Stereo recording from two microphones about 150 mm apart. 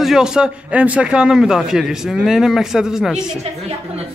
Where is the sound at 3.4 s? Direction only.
40° right (ahead or behind).